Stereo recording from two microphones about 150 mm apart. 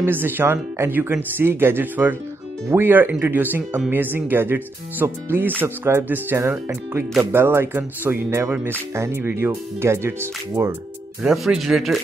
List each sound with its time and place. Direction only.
0.0 s speech: 15° right (ahead or behind)
11.2 s speech: centre (ahead or behind)